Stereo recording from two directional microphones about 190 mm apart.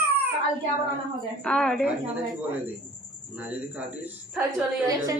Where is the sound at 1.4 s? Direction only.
5° left (ahead or behind).